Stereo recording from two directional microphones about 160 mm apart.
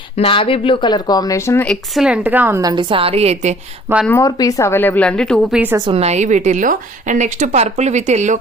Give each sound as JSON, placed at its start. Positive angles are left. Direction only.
{"t": 0.2, "sound": "speech", "side_deg": 35}
{"t": 1.6, "sound": "speech", "side_deg": 5}
{"t": 2.0, "sound": "speech", "side_deg": -10}
{"t": 2.6, "sound": "a woman's voice", "side_deg": -25}
{"t": 4.2, "sound": "a woman's voice", "side_deg": 25}
{"t": 5.8, "sound": "speech", "side_deg": -40}